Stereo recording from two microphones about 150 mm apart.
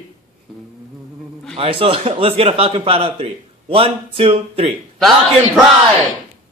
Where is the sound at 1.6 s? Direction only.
40° right (ahead or behind).